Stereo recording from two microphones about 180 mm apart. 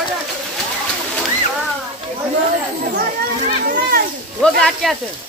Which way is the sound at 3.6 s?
55° right (ahead or behind).